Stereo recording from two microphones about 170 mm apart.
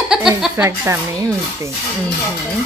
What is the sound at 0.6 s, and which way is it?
Speech, 15° right (ahead or behind).